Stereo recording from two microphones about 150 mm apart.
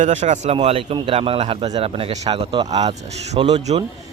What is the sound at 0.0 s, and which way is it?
Speech, 50° right (ahead or behind).